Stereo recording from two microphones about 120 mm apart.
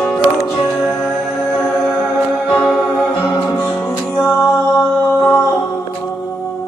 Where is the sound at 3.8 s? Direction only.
10° left (ahead or behind).